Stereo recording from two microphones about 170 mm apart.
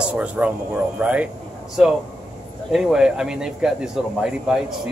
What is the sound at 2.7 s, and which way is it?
Speech, centre (ahead or behind).